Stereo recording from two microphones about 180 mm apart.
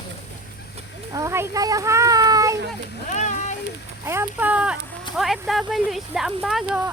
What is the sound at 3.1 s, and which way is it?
Speech, 40° left (ahead or behind).